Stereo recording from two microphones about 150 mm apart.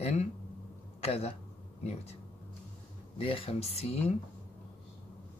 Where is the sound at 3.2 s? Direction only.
40° left (ahead or behind).